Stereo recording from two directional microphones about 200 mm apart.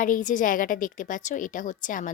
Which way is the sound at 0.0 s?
40° left (ahead or behind).